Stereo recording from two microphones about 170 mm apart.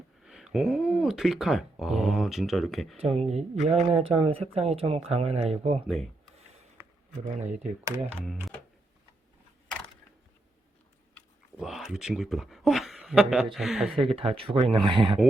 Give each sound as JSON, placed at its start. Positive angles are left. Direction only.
{"t": 0.2, "sound": "speech", "side_deg": 0}
{"t": 3.0, "sound": "speech", "side_deg": -35}
{"t": 5.8, "sound": "speech", "side_deg": 0}
{"t": 7.3, "sound": "speech", "side_deg": -45}
{"t": 11.5, "sound": "speech", "side_deg": 0}
{"t": 14.2, "sound": "speech", "side_deg": -35}